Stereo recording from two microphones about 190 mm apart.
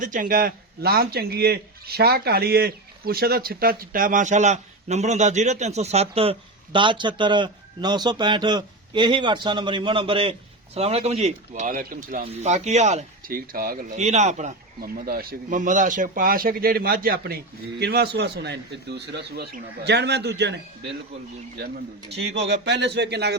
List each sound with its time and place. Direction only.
0.0 s a man's voice: 45° right (ahead or behind)
12.2 s speech: 35° right (ahead or behind)
13.3 s speech: 50° right (ahead or behind)
14.8 s a man's voice: 50° right (ahead or behind)
22.4 s speech: 60° right (ahead or behind)